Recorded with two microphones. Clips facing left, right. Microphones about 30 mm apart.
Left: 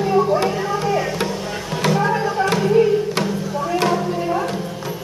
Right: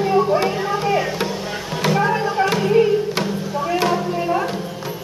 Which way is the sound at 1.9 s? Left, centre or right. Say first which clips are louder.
Right 1 dB; centre.